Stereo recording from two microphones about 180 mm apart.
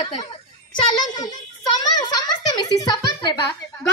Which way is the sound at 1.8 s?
20° left (ahead or behind).